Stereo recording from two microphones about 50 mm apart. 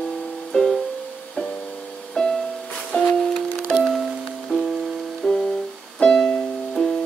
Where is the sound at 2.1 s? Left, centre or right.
Centre.